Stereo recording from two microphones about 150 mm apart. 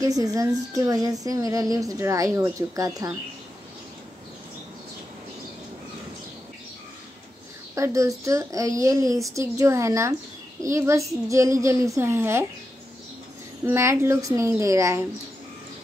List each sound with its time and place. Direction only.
0.0 s a woman's voice: 25° right (ahead or behind)
7.7 s a woman's voice: 20° right (ahead or behind)
13.7 s a woman's voice: 20° right (ahead or behind)